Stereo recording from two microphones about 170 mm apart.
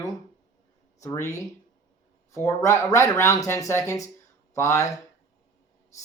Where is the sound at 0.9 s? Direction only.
20° left (ahead or behind).